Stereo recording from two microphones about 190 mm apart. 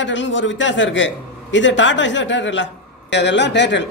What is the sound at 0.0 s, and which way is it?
A man's voice, 75° left (ahead or behind).